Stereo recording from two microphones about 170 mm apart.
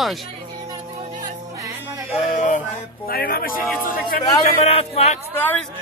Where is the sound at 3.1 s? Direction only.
60° left (ahead or behind).